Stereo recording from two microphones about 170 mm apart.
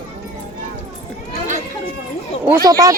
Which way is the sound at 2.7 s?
20° right (ahead or behind).